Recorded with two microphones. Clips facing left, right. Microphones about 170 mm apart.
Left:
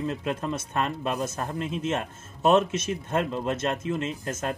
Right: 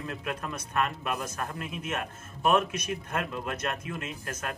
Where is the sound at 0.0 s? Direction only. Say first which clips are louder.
Left 6 dB; 25° left (ahead or behind).